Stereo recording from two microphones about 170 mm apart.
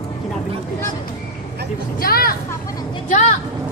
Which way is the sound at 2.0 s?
60° left (ahead or behind).